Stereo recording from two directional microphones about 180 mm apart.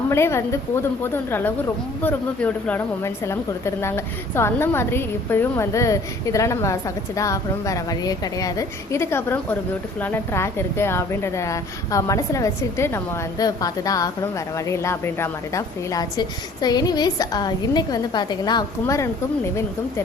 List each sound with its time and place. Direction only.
0.1 s a woman's voice: 15° left (ahead or behind)